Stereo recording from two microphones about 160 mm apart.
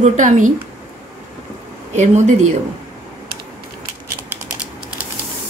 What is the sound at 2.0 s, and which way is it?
Speech, 45° right (ahead or behind).